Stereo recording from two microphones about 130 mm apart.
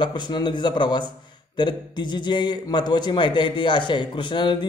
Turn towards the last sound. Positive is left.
turn(degrees=35)  # may be behind; listen again after turning